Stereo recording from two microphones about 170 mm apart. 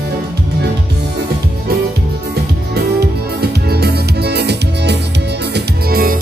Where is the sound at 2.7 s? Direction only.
70° right (ahead or behind).